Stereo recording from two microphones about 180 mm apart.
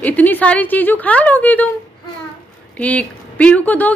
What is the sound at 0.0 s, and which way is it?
A woman's voice, 10° left (ahead or behind).